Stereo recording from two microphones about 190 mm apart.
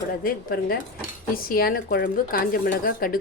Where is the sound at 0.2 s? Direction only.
50° left (ahead or behind).